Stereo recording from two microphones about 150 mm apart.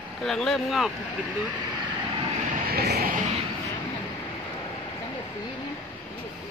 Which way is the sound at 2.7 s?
90° right.